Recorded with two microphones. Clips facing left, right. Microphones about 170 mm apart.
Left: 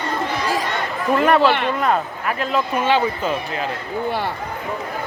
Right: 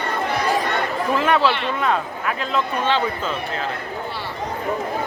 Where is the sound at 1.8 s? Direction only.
5° left (ahead or behind).